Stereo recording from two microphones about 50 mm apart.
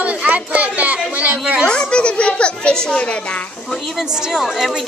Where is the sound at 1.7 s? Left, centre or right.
Left.